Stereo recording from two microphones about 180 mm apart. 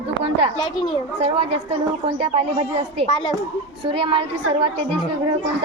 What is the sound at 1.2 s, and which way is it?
A woman's voice, 35° right (ahead or behind).